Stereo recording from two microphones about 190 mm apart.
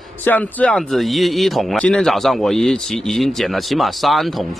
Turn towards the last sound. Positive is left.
turn(degrees=0)  # may be behind; listen again after turning